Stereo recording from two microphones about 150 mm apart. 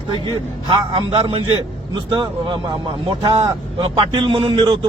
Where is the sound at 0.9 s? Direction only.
35° right (ahead or behind).